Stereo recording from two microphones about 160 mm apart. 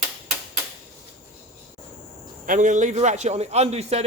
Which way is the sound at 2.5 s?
50° right (ahead or behind).